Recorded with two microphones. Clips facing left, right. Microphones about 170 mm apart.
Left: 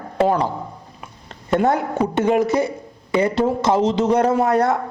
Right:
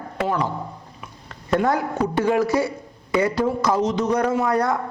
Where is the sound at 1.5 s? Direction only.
25° left (ahead or behind).